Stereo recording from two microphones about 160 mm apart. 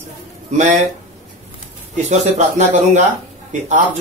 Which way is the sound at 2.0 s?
45° right (ahead or behind).